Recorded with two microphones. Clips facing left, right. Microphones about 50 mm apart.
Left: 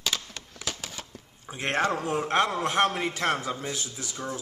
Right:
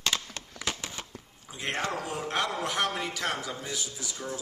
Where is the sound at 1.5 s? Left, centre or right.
Left.